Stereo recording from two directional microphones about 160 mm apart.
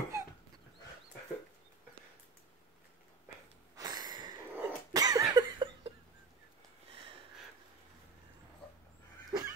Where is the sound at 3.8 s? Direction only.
25° right (ahead or behind).